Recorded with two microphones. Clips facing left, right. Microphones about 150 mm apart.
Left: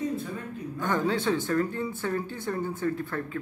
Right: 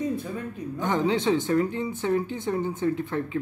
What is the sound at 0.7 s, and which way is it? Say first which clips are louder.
A man's voice: right 3 dB; 20° right (ahead or behind).